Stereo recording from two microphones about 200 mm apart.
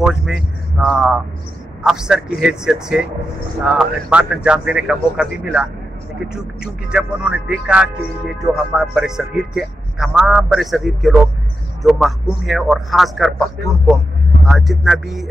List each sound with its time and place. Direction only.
0.0 s speech: centre (ahead or behind)
14.5 s speech: centre (ahead or behind)